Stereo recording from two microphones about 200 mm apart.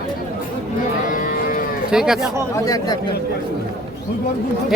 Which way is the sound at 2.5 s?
15° left (ahead or behind).